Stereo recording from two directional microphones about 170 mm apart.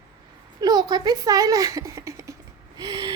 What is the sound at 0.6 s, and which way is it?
Speech, 25° right (ahead or behind).